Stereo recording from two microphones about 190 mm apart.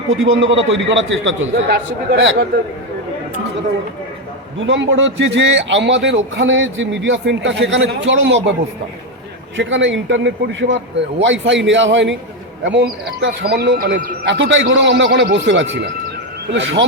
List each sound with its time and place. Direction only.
0.2 s a man's voice: 85° right
1.7 s speech: 60° right (ahead or behind)
4.6 s a man's voice: 75° right (ahead or behind)
9.6 s a man's voice: 75° right (ahead or behind)